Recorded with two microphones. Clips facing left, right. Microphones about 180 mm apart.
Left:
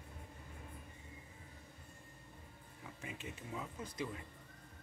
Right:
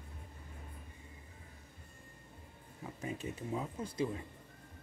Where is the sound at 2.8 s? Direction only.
40° right (ahead or behind).